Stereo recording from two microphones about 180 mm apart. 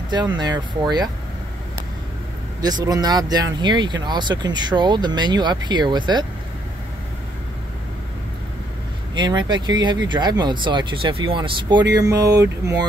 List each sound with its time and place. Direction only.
0.4 s speech: 25° right (ahead or behind)
2.6 s speech: 20° right (ahead or behind)
9.1 s speech: 25° right (ahead or behind)